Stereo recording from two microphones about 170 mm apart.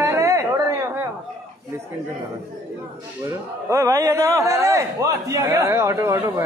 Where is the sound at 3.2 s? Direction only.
20° right (ahead or behind).